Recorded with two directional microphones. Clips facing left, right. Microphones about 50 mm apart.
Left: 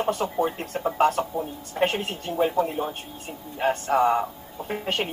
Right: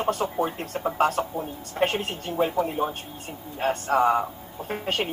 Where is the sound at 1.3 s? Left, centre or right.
Right.